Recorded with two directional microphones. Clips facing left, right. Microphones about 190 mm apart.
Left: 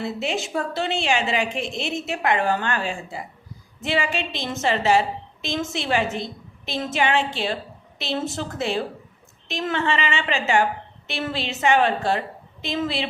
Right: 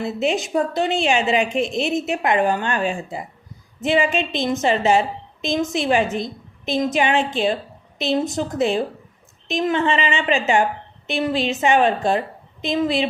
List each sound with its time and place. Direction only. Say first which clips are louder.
0.0 s a woman's voice: right 5 dB; 20° right (ahead or behind)